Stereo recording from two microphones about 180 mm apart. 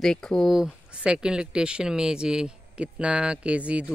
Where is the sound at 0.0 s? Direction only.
5° left (ahead or behind).